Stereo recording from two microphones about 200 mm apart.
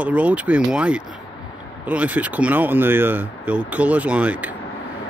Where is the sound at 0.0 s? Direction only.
5° right (ahead or behind).